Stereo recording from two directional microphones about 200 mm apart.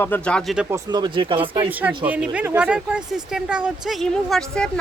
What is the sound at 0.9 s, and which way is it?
Speech, 25° right (ahead or behind).